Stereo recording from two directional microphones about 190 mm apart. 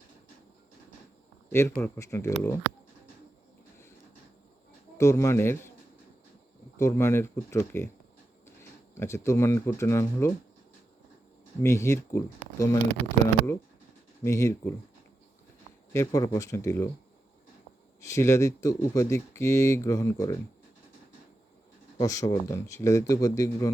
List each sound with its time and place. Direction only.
1.5 s speech: 10° left (ahead or behind)
4.9 s speech: 15° left (ahead or behind)
6.7 s speech: 15° left (ahead or behind)
9.0 s speech: 15° left (ahead or behind)
11.6 s speech: 15° left (ahead or behind)
15.9 s speech: 15° left (ahead or behind)
18.0 s speech: 15° left (ahead or behind)
22.0 s speech: 15° left (ahead or behind)